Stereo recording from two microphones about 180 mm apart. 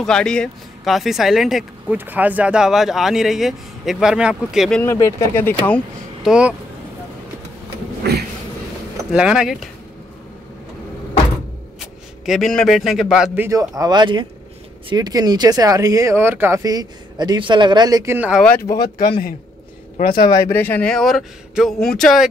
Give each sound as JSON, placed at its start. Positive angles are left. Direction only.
{"t": 0.0, "sound": "speech", "side_deg": 5}
{"t": 4.9, "sound": "speech", "side_deg": 15}
{"t": 6.2, "sound": "speech", "side_deg": -5}
{"t": 9.1, "sound": "speech", "side_deg": -5}
{"t": 11.8, "sound": "a man's voice", "side_deg": 0}
{"t": 13.5, "sound": "speech", "side_deg": -20}
{"t": 18.4, "sound": "speech", "side_deg": 10}
{"t": 20.0, "sound": "speech", "side_deg": 55}
{"t": 20.2, "sound": "speech", "side_deg": 15}